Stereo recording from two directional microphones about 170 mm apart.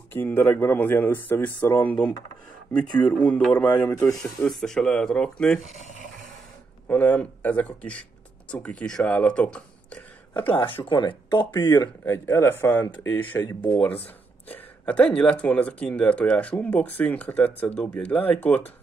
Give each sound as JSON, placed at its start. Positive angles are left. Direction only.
{"t": 0.1, "sound": "speech", "side_deg": 10}
{"t": 4.5, "sound": "speech", "side_deg": 5}
{"t": 5.6, "sound": "speech", "side_deg": 45}
{"t": 6.9, "sound": "speech", "side_deg": 10}
{"t": 10.9, "sound": "speech", "side_deg": 25}
{"t": 13.5, "sound": "speech", "side_deg": 25}
{"t": 13.7, "sound": "speech", "side_deg": 10}